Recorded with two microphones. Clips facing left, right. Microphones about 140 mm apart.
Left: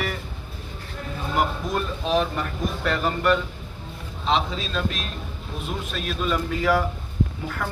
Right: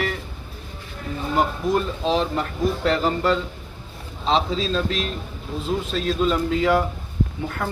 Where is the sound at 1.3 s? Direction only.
25° right (ahead or behind).